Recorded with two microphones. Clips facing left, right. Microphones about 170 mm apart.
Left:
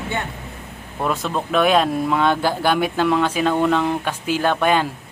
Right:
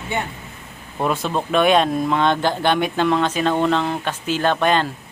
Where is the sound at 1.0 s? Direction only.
Centre (ahead or behind).